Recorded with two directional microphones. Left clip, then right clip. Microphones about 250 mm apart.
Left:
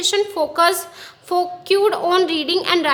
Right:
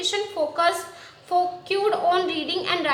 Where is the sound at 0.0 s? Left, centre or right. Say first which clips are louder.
Left 6 dB; left.